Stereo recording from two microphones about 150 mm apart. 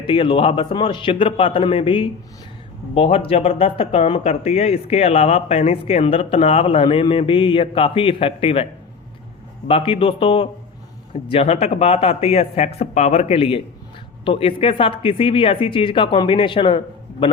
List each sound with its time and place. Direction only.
0.0 s speech: 35° left (ahead or behind)
9.6 s a man's voice: 40° left (ahead or behind)